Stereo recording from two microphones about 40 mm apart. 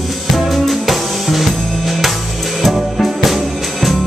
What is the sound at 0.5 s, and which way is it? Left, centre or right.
Music, centre.